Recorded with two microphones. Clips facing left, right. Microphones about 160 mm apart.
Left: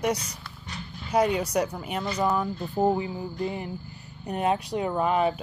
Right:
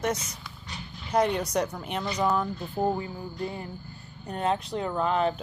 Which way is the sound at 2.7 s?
20° left (ahead or behind).